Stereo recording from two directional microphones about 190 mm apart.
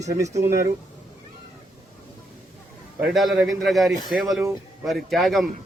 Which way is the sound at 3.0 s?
Centre (ahead or behind).